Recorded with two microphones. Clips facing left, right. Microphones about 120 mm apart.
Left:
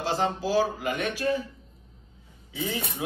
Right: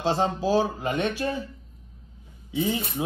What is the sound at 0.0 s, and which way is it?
Speech, 25° right (ahead or behind).